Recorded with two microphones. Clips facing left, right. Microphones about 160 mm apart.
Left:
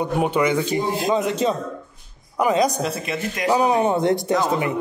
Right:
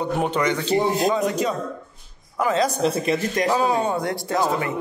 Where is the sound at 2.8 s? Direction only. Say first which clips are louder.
Right 4 dB; 35° right (ahead or behind).